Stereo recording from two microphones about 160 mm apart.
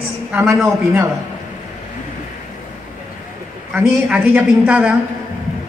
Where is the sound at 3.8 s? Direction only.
10° right (ahead or behind).